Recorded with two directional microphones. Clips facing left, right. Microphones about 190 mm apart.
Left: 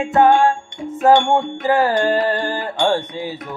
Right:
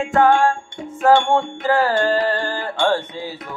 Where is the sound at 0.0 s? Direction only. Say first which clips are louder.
Left 2 dB; 20° left (ahead or behind).